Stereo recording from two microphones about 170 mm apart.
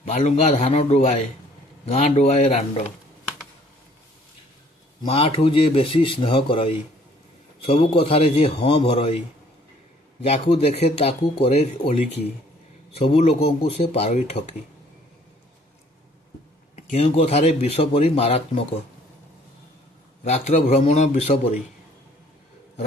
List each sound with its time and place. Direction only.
0.1 s speech: 45° left (ahead or behind)
5.0 s speech: 35° left (ahead or behind)
10.3 s speech: 35° left (ahead or behind)
16.7 s speech: 40° left (ahead or behind)
20.2 s speech: 40° left (ahead or behind)